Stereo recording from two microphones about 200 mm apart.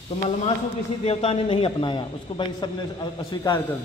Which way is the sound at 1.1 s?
30° left (ahead or behind).